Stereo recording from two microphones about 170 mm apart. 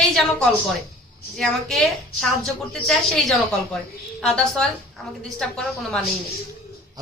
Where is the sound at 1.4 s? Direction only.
5° left (ahead or behind).